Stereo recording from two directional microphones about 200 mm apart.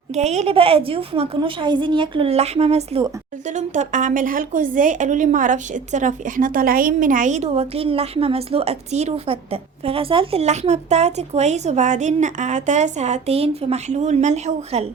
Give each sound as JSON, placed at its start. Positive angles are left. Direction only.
{"t": 0.1, "sound": "a woman's voice", "side_deg": -35}